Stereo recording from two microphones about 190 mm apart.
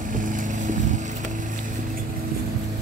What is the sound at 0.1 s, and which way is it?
Vehicle, 45° right (ahead or behind).